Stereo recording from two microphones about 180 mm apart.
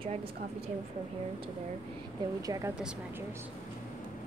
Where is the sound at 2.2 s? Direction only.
20° right (ahead or behind).